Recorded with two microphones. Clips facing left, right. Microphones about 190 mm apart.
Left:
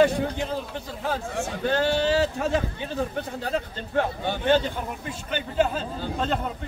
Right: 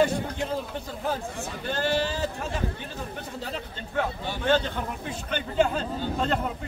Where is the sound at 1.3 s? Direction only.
80° left.